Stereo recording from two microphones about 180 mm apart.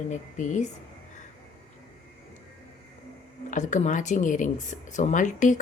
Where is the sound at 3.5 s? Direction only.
45° left (ahead or behind).